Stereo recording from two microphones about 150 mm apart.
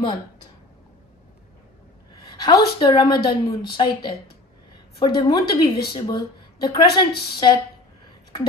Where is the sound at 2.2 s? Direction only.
30° left (ahead or behind).